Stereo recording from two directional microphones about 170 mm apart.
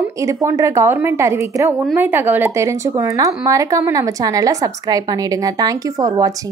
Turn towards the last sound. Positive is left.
turn(degrees=-20)  # may be behind; listen again after turning